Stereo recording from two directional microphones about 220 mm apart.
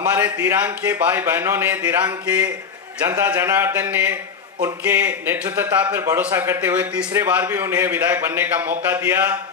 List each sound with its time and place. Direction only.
0.0 s a man's voice: 5° right (ahead or behind)
3.1 s a man's voice: 10° right (ahead or behind)